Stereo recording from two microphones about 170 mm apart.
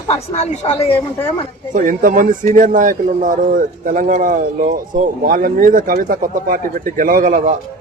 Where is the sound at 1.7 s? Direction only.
55° right (ahead or behind).